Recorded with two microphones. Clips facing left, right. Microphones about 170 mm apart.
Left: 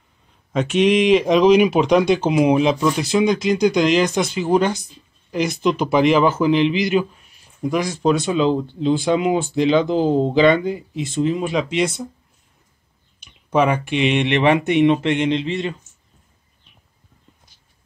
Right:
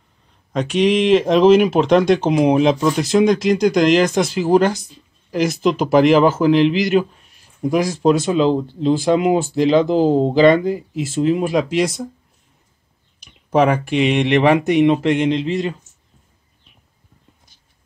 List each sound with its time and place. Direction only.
0.5 s speech: centre (ahead or behind)
13.8 s speech: centre (ahead or behind)